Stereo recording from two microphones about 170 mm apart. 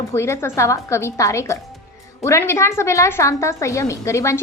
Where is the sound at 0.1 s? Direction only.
15° left (ahead or behind).